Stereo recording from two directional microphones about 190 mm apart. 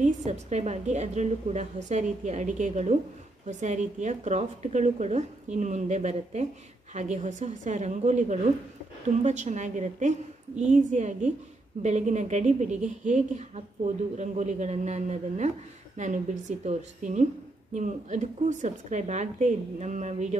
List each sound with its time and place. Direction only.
0.0 s a woman's voice: 35° right (ahead or behind)